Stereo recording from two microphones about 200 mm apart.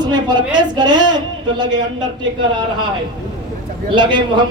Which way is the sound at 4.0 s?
25° right (ahead or behind).